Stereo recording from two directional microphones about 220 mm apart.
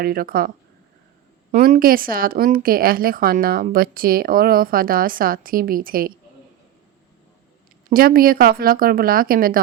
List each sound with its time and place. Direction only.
0.0 s a woman's voice: 40° right (ahead or behind)
1.6 s a woman's voice: 40° right (ahead or behind)
7.9 s a woman's voice: 40° right (ahead or behind)